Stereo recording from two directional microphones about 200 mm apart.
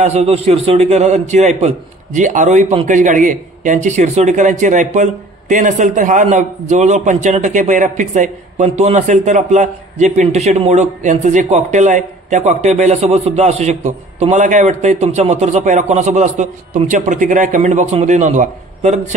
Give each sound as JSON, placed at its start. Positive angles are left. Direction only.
{"t": 0.0, "sound": "a man's voice", "side_deg": -30}